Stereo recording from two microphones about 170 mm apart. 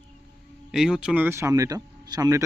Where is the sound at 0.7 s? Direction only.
5° right (ahead or behind); by 2.4 s 20° right (ahead or behind).